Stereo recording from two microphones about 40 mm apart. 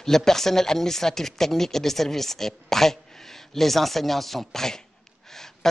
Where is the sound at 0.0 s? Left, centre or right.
Centre.